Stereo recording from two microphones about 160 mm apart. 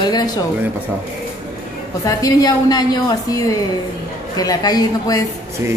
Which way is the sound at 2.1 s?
25° left (ahead or behind).